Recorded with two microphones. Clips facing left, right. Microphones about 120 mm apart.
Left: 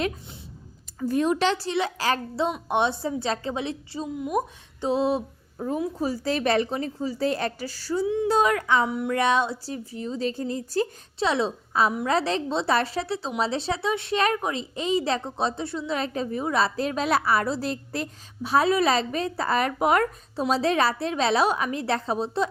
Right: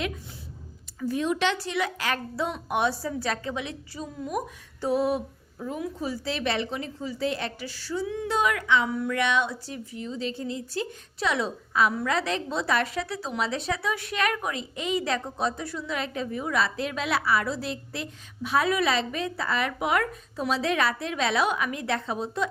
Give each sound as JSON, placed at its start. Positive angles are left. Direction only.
{"t": 0.9, "sound": "a woman's voice", "side_deg": 45}
{"t": 5.5, "sound": "a woman's voice", "side_deg": 40}
{"t": 8.0, "sound": "a woman's voice", "side_deg": 20}
{"t": 8.3, "sound": "a woman's voice", "side_deg": 35}
{"t": 8.9, "sound": "a woman's voice", "side_deg": 20}
{"t": 9.1, "sound": "a woman's voice", "side_deg": 35}
{"t": 11.2, "sound": "a woman's voice", "side_deg": 30}